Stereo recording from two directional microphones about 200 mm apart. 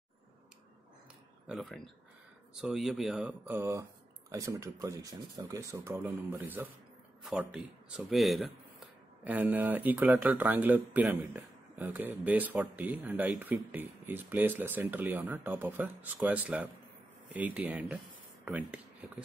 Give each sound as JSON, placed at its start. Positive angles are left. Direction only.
{"t": 1.5, "sound": "speech", "side_deg": 0}